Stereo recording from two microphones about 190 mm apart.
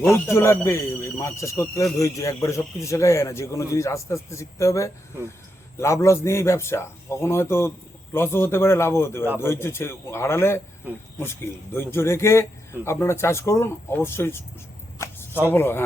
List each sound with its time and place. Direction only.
0.1 s speech: 15° left (ahead or behind)
14.9 s a sound: 15° left (ahead or behind)
15.5 s speech: 10° left (ahead or behind)